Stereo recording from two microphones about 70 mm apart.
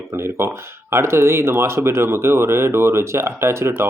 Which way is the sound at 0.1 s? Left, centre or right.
Right.